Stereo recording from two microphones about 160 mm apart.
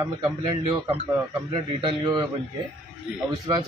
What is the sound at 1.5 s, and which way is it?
Speech, 30° right (ahead or behind).